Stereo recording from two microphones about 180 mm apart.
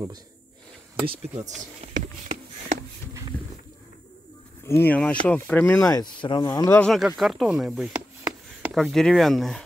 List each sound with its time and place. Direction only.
1.0 s speech: 35° right (ahead or behind)
1.8 s a sound: 40° right (ahead or behind)
4.6 s speech: 10° left (ahead or behind)
7.2 s speech: centre (ahead or behind)
8.2 s a sound: 15° right (ahead or behind)
8.7 s speech: centre (ahead or behind)